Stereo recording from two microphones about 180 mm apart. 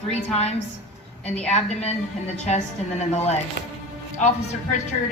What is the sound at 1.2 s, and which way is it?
Speech, 5° left (ahead or behind).